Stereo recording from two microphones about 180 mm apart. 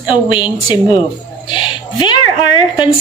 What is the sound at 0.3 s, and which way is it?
A woman's voice, 25° left (ahead or behind).